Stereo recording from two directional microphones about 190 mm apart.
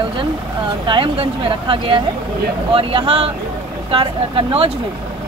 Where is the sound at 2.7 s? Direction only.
30° right (ahead or behind).